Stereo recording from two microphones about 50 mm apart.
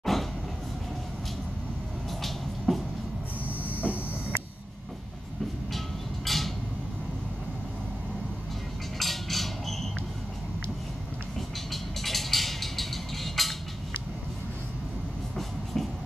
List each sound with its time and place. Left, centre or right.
0.0 s train: centre
2.2 s vehicle: centre
3.4 s hiss: left
6.2 s a sound: centre
9.0 s a sound: centre
11.3 s vehicle: centre
15.3 s train: centre